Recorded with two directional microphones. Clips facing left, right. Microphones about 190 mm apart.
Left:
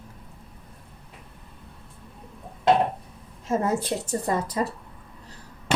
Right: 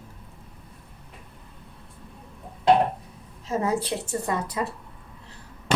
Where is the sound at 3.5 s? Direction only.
45° left (ahead or behind).